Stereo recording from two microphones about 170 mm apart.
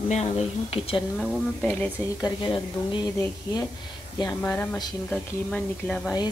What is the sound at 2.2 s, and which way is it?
Speech, 30° left (ahead or behind).